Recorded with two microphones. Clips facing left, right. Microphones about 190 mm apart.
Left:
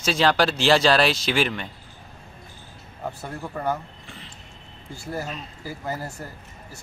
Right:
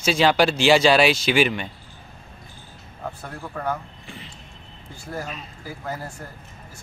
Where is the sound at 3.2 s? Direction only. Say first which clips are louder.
Left 1 dB; 10° left (ahead or behind).